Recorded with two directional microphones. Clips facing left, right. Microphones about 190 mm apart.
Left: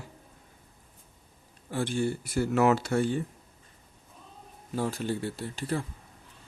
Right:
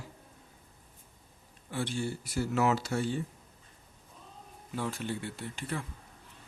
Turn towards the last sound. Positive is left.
turn(degrees=35)  # may be behind; listen again after turning